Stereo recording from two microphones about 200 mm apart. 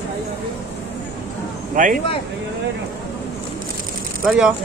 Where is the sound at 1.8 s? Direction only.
40° right (ahead or behind).